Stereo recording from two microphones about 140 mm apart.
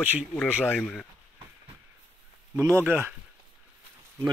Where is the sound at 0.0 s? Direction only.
10° right (ahead or behind).